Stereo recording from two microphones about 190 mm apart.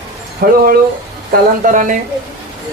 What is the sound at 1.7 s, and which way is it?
Speech, 45° right (ahead or behind).